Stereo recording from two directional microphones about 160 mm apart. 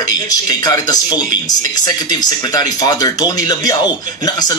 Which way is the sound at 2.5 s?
25° left (ahead or behind).